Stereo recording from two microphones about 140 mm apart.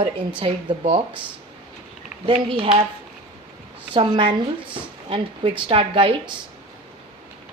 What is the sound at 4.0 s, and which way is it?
Speech, 35° right (ahead or behind).